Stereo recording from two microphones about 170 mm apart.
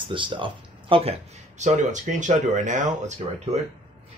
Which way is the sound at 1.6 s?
45° right (ahead or behind).